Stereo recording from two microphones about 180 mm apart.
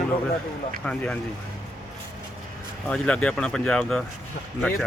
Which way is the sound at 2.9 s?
5° left (ahead or behind).